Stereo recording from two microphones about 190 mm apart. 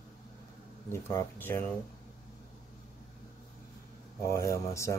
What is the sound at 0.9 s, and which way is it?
Speech, 10° left (ahead or behind).